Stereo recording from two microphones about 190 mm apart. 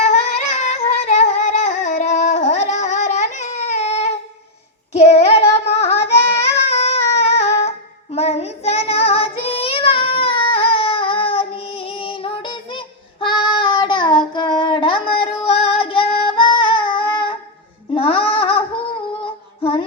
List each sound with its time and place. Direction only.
0.0 s singing: 40° left (ahead or behind)
4.9 s child singing: 35° left (ahead or behind)
16.8 s a sound: 30° left (ahead or behind)
17.9 s music: 30° left (ahead or behind)
19.2 s female singing: 30° left (ahead or behind)